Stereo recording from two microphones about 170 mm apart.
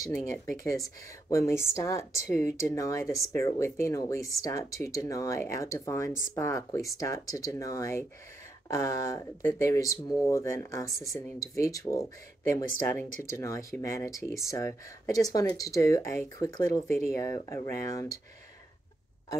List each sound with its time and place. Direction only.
0.0 s speech: 20° left (ahead or behind)